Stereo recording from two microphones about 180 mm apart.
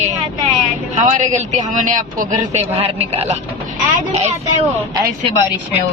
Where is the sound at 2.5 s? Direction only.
35° right (ahead or behind).